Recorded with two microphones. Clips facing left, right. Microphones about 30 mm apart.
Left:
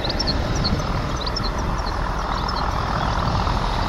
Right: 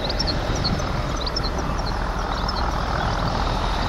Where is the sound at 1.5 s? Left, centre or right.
Centre.